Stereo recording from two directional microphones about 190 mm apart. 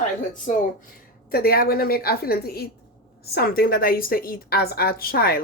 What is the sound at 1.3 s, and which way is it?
Speech, 50° left (ahead or behind).